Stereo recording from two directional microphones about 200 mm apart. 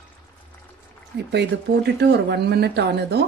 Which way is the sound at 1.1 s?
55° right (ahead or behind).